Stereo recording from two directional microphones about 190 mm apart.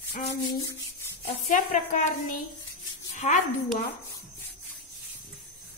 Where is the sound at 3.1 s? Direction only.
40° left (ahead or behind).